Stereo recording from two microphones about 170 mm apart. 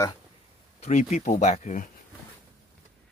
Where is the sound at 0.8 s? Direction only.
45° left (ahead or behind).